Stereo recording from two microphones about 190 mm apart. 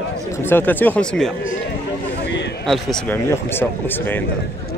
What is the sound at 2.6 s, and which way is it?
Speech, centre (ahead or behind).